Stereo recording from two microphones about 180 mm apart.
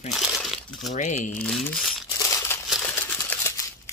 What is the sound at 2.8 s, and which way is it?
Camera, 15° left (ahead or behind).